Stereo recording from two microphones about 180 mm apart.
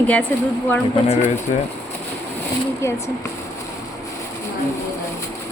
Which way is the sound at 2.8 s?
15° left (ahead or behind).